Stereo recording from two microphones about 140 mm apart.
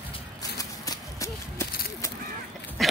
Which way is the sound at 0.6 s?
25° left (ahead or behind).